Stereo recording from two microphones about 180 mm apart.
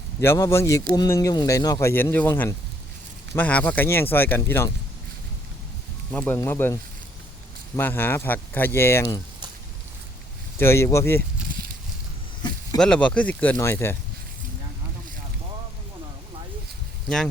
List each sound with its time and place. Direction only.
0.2 s speech: 15° left (ahead or behind)
6.1 s speech: 10° left (ahead or behind)
7.8 s speech: 10° left (ahead or behind)
10.6 s speech: 15° left (ahead or behind)
11.4 s a sound: 55° right (ahead or behind)
12.8 s speech: 5° left (ahead or behind)